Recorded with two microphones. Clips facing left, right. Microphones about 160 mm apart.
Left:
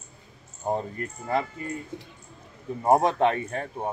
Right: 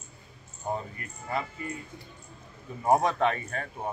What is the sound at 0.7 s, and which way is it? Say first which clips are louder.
Speech: left 5 dB; 40° left (ahead or behind).